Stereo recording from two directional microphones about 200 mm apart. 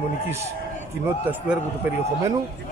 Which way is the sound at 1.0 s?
10° right (ahead or behind).